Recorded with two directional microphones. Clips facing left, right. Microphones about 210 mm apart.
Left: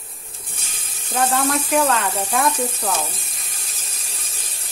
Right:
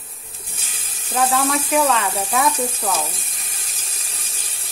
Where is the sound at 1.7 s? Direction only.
Centre (ahead or behind).